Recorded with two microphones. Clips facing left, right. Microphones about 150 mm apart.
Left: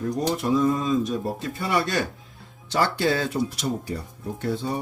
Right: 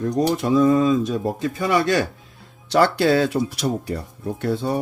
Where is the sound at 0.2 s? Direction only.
90° right.